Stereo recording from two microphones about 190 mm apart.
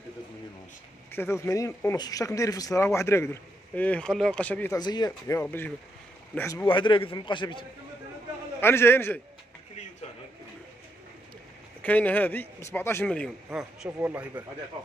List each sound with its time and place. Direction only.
1.1 s speech: 10° left (ahead or behind)
4.7 s a man's voice: 20° left (ahead or behind)
8.5 s speech: 10° left (ahead or behind)
11.8 s speech: 10° left (ahead or behind)
13.5 s speech: 10° right (ahead or behind)